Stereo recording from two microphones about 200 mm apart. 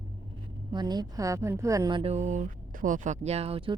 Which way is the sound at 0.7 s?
20° right (ahead or behind).